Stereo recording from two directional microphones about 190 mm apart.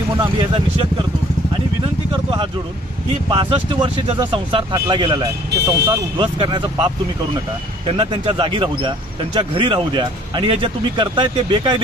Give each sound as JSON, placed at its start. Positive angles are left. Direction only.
{"t": 0.2, "sound": "speech", "side_deg": -25}
{"t": 3.3, "sound": "speech", "side_deg": -25}